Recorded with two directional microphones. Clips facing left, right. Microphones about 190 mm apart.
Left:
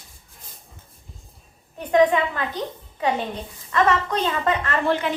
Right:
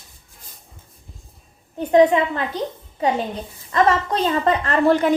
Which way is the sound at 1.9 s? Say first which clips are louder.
Right 3 dB; 25° right (ahead or behind).